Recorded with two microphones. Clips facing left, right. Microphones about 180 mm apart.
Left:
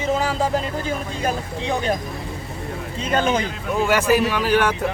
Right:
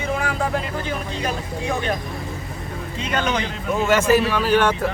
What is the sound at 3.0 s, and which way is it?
Speech, 45° left (ahead or behind).